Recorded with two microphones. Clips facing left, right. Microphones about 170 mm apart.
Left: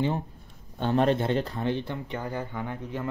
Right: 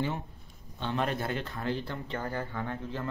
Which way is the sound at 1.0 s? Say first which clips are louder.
Left 8 dB; 30° left (ahead or behind).